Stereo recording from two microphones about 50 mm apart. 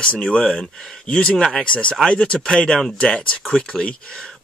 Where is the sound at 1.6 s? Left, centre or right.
Left.